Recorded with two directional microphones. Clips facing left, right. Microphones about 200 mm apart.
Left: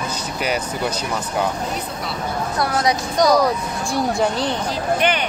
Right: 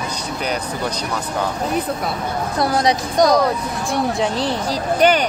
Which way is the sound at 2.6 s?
25° right (ahead or behind).